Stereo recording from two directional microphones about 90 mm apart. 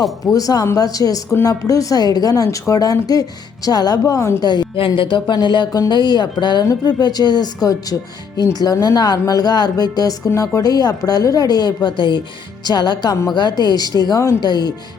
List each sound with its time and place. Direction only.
0.3 s a woman's voice: 40° left (ahead or behind)
4.4 s a woman's voice: 55° left (ahead or behind)
4.8 s a woman's voice: 65° left (ahead or behind); by 14.5 s 45° left (ahead or behind)